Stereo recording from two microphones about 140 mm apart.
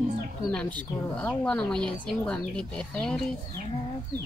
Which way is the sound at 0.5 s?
10° left (ahead or behind).